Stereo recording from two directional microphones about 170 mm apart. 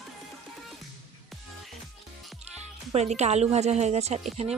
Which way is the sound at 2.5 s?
40° right (ahead or behind).